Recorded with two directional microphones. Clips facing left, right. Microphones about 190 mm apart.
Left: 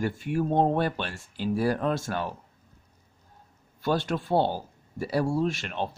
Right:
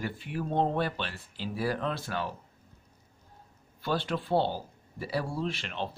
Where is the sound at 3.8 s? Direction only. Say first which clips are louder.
Left 4 dB; 45° left (ahead or behind).